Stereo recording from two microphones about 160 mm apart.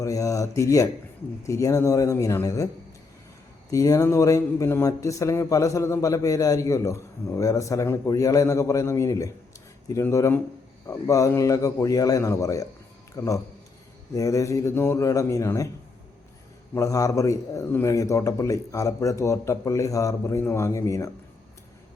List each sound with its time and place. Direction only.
0.0 s speech: 20° left (ahead or behind)
3.7 s a man's voice: 20° left (ahead or behind)
16.7 s speech: 20° left (ahead or behind)